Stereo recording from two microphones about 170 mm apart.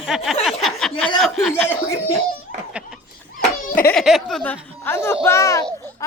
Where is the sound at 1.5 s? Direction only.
10° left (ahead or behind).